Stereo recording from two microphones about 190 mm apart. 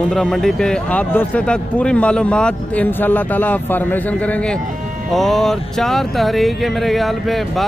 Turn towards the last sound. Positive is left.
turn(degrees=0)  # may be behind; listen again after turning